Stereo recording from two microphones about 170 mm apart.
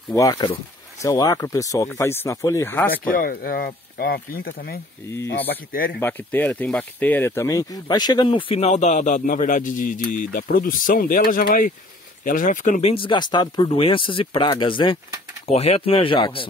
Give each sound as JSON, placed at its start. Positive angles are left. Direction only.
{"t": 0.1, "sound": "speech", "side_deg": 20}
{"t": 2.9, "sound": "speech", "side_deg": 60}
{"t": 5.9, "sound": "speech", "side_deg": 10}
{"t": 12.9, "sound": "speech", "side_deg": 30}